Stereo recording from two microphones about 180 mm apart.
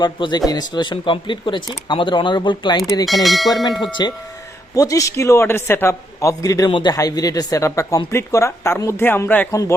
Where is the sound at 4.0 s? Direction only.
25° left (ahead or behind).